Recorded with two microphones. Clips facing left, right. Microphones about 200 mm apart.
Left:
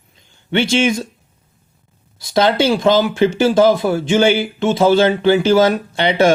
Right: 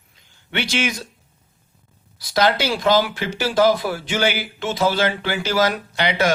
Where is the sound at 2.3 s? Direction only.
25° left (ahead or behind).